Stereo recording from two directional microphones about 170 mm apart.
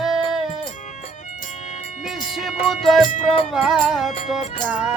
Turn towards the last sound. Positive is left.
turn(degrees=-10)  # may be behind; listen again after turning